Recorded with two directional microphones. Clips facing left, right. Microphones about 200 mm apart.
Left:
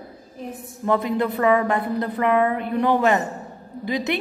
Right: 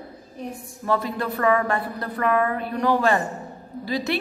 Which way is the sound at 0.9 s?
20° left (ahead or behind).